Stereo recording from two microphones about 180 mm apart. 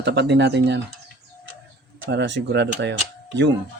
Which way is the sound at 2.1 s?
75° right (ahead or behind).